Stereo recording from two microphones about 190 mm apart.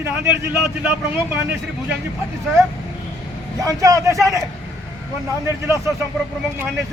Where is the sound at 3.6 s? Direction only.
15° right (ahead or behind).